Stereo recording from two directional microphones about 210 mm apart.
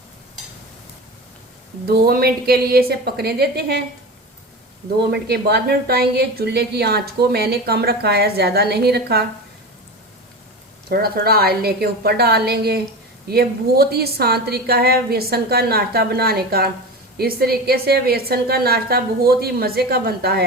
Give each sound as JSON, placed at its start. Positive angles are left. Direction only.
{"t": 1.9, "sound": "a woman's voice", "side_deg": -45}
{"t": 5.1, "sound": "a woman's voice", "side_deg": -50}
{"t": 10.8, "sound": "a woman's voice", "side_deg": -45}